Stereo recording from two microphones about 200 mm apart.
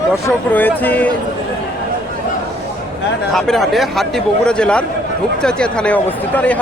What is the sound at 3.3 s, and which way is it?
Speech, centre (ahead or behind).